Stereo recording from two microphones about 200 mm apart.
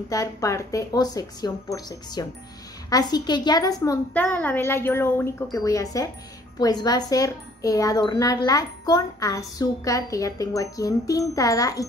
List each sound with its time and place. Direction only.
0.1 s speech: 15° left (ahead or behind)